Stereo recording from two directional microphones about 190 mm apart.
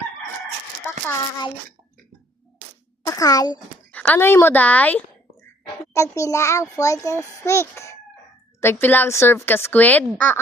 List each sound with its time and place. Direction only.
3.1 s a child's voice: 20° left (ahead or behind)